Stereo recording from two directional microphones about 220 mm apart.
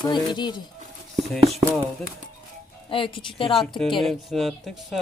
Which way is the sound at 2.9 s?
25° left (ahead or behind).